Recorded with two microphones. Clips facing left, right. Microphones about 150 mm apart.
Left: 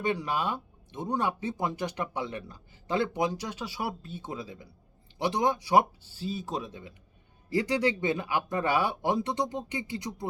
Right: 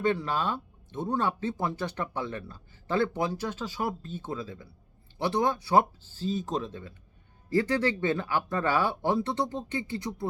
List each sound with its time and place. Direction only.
0.0 s speech: 15° left (ahead or behind)